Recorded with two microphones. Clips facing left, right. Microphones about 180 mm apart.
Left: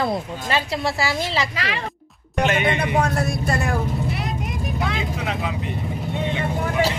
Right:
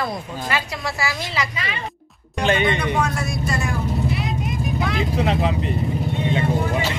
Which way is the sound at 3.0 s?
60° left (ahead or behind).